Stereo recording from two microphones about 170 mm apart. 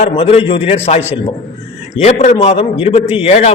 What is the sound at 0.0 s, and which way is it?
A man's voice, 35° left (ahead or behind).